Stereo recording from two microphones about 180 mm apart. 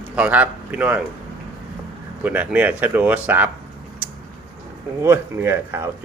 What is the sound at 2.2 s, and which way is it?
Speech, 10° right (ahead or behind).